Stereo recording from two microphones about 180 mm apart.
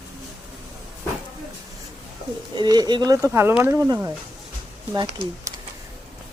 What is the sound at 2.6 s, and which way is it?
Speech, 20° right (ahead or behind).